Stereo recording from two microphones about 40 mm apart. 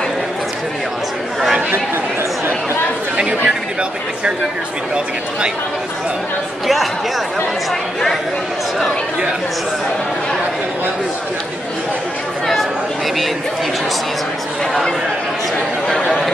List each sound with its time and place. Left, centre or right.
3.2 s chatter: right